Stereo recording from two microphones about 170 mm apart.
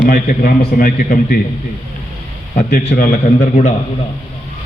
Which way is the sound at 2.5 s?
50° left (ahead or behind).